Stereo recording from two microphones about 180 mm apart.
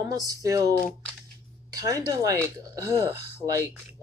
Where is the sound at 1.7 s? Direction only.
20° right (ahead or behind).